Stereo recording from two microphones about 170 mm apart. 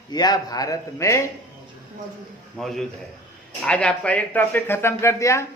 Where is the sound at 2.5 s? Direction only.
Centre (ahead or behind).